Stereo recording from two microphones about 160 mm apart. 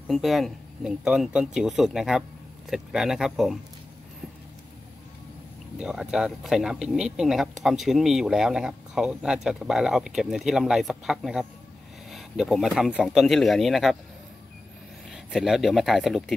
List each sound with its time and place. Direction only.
0.1 s speech: centre (ahead or behind)
5.8 s speech: 5° right (ahead or behind)
15.0 s speech: centre (ahead or behind)